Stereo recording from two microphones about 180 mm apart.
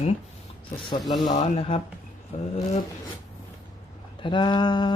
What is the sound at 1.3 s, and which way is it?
Speech, 40° left (ahead or behind).